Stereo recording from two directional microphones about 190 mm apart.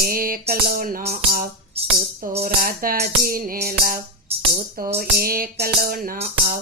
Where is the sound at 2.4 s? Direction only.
50° right (ahead or behind).